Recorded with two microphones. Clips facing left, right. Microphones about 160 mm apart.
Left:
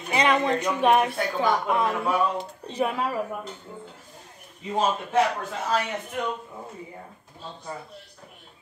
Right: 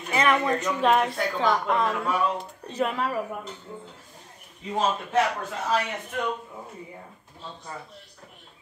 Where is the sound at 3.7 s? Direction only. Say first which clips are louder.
Right 1 dB; centre (ahead or behind).